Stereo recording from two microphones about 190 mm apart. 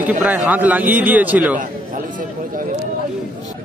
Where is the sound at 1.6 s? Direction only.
45° right (ahead or behind).